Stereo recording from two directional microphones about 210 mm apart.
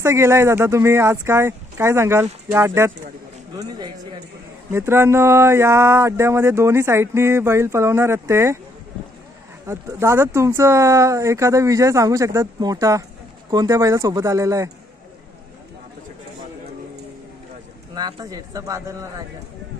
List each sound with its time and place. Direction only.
0.0 s speech: 15° right (ahead or behind)
4.7 s speech: 10° right (ahead or behind)
9.7 s speech: 15° right (ahead or behind)
17.9 s speech: 20° right (ahead or behind)